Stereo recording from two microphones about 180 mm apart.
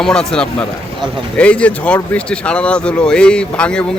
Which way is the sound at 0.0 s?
5° left (ahead or behind).